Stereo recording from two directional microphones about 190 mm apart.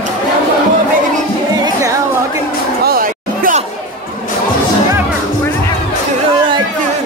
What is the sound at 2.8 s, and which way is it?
Chatter, 50° right (ahead or behind).